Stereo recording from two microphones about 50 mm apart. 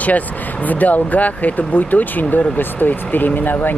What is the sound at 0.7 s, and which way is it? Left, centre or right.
Speech, left.